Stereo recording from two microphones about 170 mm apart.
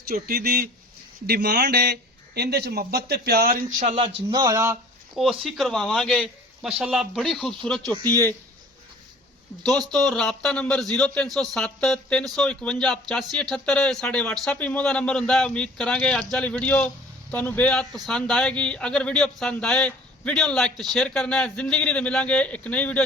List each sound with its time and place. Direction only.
0.0 s speech: 60° right (ahead or behind)
3.8 s speech: 30° right (ahead or behind)
5.1 s a man's voice: centre (ahead or behind)
9.6 s a man's voice: 5° left (ahead or behind)